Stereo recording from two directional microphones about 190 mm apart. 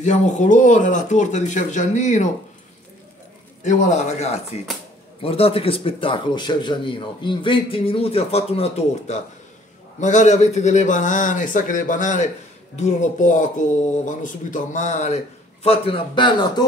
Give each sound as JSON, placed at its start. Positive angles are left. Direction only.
{"t": 0.0, "sound": "speech", "side_deg": 40}
{"t": 3.6, "sound": "speech", "side_deg": 40}